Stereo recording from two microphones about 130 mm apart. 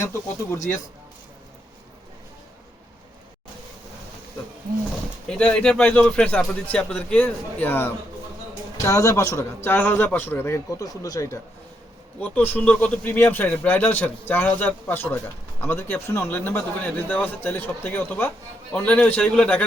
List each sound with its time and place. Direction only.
0.0 s a man's voice: 25° left (ahead or behind)
5.4 s a man's voice: 10° left (ahead or behind); by 11.3 s 25° left (ahead or behind)
12.2 s speech: 15° left (ahead or behind)